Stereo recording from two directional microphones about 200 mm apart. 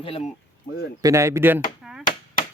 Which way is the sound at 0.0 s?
30° left (ahead or behind).